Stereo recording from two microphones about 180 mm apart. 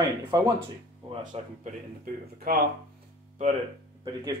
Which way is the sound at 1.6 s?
50° right (ahead or behind).